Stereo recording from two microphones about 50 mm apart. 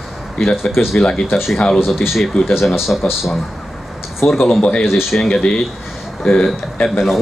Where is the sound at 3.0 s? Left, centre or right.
Left.